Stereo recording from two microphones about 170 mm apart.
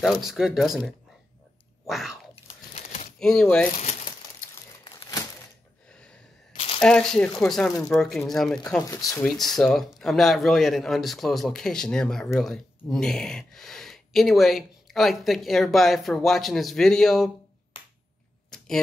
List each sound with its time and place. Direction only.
0.0 s a man's voice: centre (ahead or behind)
2.3 s crunch: 40° left (ahead or behind)
3.2 s a man's voice: 5° left (ahead or behind)
4.8 s crumpling: 25° left (ahead or behind)
5.9 s a sound: 5° left (ahead or behind)
6.5 s a sound: 35° left (ahead or behind)
6.8 s a man's voice: 5° left (ahead or behind)
17.8 s finger snapping: 30° left (ahead or behind)
18.5 s a sound: 5° left (ahead or behind)